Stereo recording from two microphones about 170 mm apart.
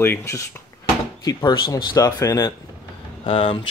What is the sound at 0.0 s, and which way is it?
Speech, 15° left (ahead or behind).